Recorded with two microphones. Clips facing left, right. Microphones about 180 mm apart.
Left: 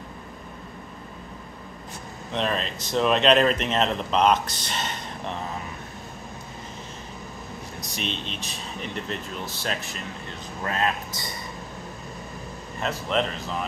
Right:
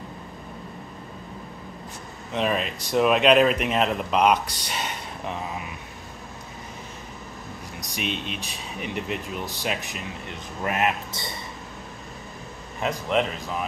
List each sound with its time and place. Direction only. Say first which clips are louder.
2.3 s speech: right 2 dB; 10° right (ahead or behind)
7.9 s speech: right 3 dB; 10° right (ahead or behind)
12.8 s speech: right 2 dB; 10° right (ahead or behind)